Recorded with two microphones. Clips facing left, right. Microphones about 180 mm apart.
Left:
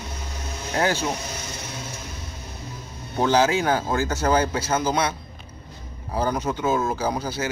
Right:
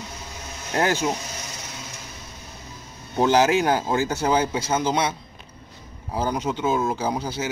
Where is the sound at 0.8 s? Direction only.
15° right (ahead or behind).